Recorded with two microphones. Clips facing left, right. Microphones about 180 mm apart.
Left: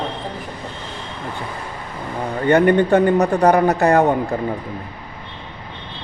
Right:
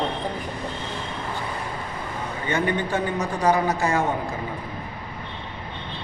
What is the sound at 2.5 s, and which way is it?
Speech, 60° left (ahead or behind).